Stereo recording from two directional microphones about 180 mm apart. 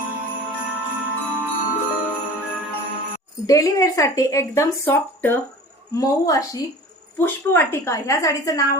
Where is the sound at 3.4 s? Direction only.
20° left (ahead or behind).